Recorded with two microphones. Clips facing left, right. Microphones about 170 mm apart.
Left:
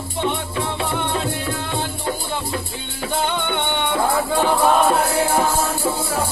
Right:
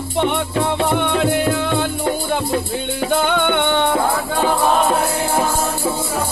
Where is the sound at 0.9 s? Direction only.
80° right.